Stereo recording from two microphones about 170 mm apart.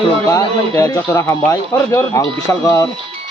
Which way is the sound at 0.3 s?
20° left (ahead or behind).